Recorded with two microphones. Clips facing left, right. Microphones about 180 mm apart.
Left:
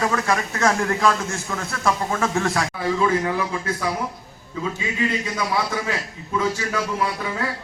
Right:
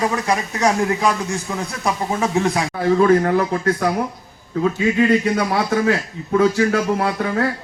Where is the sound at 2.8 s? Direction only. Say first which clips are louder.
Right 8 dB; 60° right (ahead or behind).